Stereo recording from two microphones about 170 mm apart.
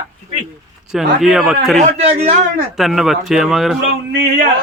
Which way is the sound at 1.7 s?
35° right (ahead or behind).